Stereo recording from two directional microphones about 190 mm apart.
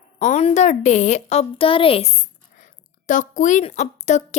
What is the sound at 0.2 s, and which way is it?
A woman's voice, 35° left (ahead or behind).